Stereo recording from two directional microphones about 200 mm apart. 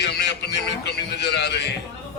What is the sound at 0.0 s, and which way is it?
A man's voice, 55° left (ahead or behind).